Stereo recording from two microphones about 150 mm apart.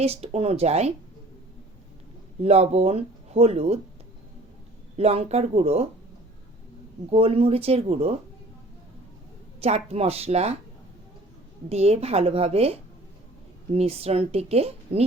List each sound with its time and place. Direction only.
0.0 s speech: 45° right (ahead or behind)
2.4 s speech: 45° right (ahead or behind)
4.9 s speech: 45° right (ahead or behind)
7.1 s speech: 40° right (ahead or behind)
9.6 s speech: 45° right (ahead or behind)
11.7 s speech: 45° right (ahead or behind)